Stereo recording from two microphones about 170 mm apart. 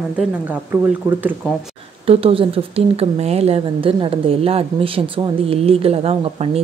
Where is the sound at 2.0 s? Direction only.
35° right (ahead or behind).